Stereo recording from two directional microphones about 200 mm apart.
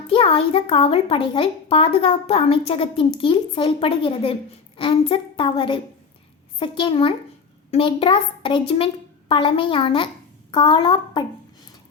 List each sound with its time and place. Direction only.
0.1 s a child's voice: 30° left (ahead or behind)